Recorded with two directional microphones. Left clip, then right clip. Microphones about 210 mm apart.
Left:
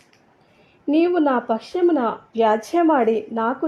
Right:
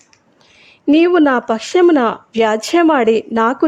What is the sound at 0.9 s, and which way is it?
A woman's voice, 30° right (ahead or behind).